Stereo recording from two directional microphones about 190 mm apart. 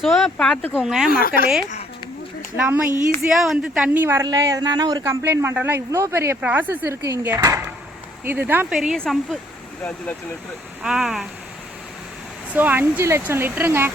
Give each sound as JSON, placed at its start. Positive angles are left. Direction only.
{"t": 0.0, "sound": "speech", "side_deg": 0}
{"t": 1.1, "sound": "a woman's voice", "side_deg": 50}
{"t": 2.6, "sound": "speech", "side_deg": -10}
{"t": 10.8, "sound": "speech", "side_deg": -5}
{"t": 12.5, "sound": "speech", "side_deg": -10}